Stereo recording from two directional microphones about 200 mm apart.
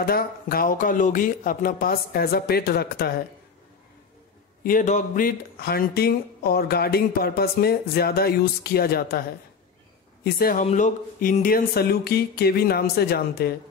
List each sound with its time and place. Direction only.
0.0 s speech: 50° left (ahead or behind)
4.6 s speech: 40° left (ahead or behind)
10.2 s speech: 45° left (ahead or behind)